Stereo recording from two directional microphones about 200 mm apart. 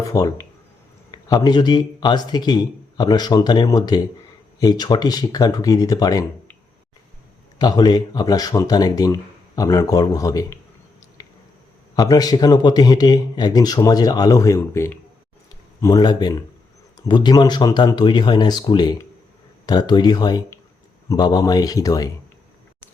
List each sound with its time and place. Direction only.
0.0 s speech: 15° left (ahead or behind)
7.6 s a man's voice: 20° left (ahead or behind)
11.2 s squish: 20° left (ahead or behind)
11.9 s speech: 20° left (ahead or behind)